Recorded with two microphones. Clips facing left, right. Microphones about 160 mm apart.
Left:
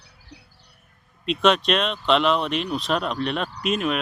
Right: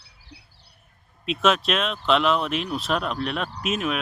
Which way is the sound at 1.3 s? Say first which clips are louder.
Left 2 dB; 5° right (ahead or behind).